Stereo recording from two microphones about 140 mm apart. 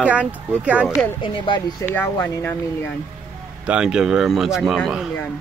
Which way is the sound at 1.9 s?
15° left (ahead or behind).